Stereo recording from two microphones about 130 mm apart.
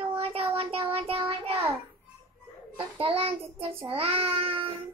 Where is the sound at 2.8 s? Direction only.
40° right (ahead or behind).